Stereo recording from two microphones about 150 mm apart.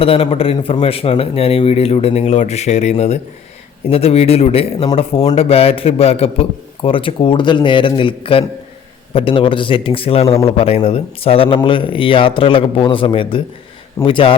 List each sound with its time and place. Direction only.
0.0 s a man's voice: 40° left (ahead or behind)